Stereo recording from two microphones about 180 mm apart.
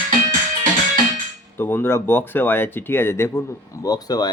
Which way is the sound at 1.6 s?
10° left (ahead or behind).